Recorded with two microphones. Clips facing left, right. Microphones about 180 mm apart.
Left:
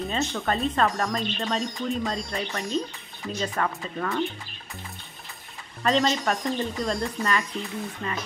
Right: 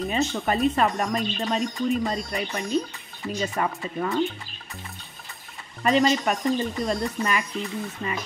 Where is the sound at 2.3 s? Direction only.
15° right (ahead or behind).